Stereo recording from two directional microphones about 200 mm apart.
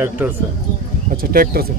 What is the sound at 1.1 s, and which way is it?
Speech, 45° right (ahead or behind).